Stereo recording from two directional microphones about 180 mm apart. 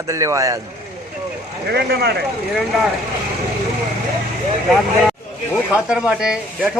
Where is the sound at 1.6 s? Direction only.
65° right (ahead or behind).